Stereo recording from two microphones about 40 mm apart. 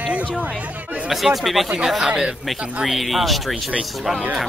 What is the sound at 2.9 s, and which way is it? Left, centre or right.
Speech, centre.